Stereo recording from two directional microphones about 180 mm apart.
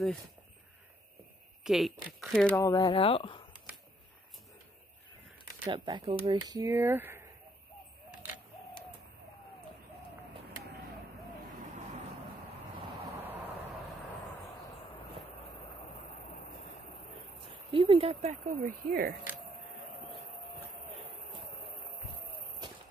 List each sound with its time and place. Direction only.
1.6 s speech: centre (ahead or behind)
2.5 s speech: 20° left (ahead or behind)
5.7 s speech: 25° right (ahead or behind)
17.6 s speech: 30° right (ahead or behind)
18.4 s speech: 50° right (ahead or behind)